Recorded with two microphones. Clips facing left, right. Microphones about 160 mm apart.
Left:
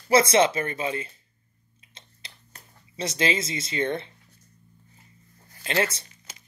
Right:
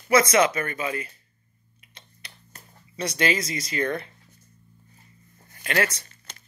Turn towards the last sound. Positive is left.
turn(degrees=5)  # may be behind; listen again after turning